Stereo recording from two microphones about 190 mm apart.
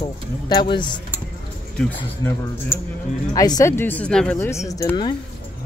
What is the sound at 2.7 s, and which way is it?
Speech, 15° left (ahead or behind).